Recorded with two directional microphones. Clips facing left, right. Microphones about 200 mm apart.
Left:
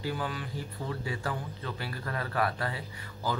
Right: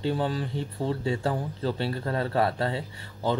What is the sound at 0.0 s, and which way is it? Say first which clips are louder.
Speech: right 7 dB; 30° right (ahead or behind).